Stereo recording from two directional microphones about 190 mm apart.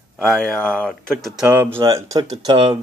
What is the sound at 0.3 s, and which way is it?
Speech, 5° left (ahead or behind).